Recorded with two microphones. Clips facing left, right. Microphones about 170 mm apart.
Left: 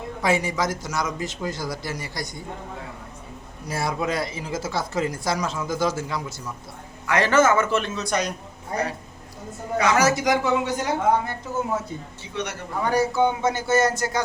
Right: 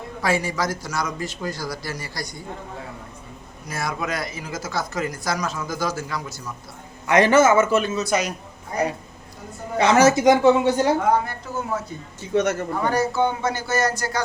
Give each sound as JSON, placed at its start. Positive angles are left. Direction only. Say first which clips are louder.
{"t": 0.2, "sound": "speech", "louder": "even", "side_deg": 20}
{"t": 3.7, "sound": "speech", "louder": "left 2 dB", "side_deg": 30}
{"t": 7.1, "sound": "a man's voice", "louder": "right 3 dB", "side_deg": -15}
{"t": 9.7, "sound": "speech", "louder": "right 4 dB", "side_deg": -30}
{"t": 12.2, "sound": "a man's voice", "louder": "right 11 dB", "side_deg": -45}
{"t": 12.8, "sound": "speech", "louder": "left 1 dB", "side_deg": 10}